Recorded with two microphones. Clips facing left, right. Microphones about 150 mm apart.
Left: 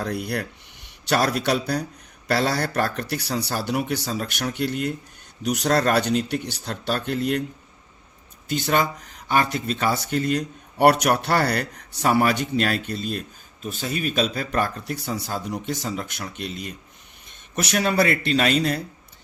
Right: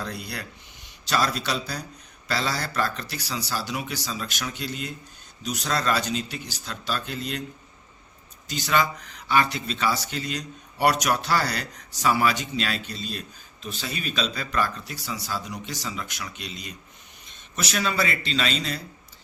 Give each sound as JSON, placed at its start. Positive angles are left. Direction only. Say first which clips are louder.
{"t": 0.0, "sound": "speech", "louder": "left 7 dB", "side_deg": 60}
{"t": 8.4, "sound": "a man's voice", "louder": "left 2 dB", "side_deg": 50}